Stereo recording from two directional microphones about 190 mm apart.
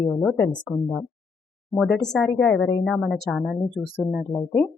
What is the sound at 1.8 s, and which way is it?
Speech, 5° left (ahead or behind).